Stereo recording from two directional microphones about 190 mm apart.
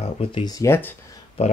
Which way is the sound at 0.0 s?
30° left (ahead or behind).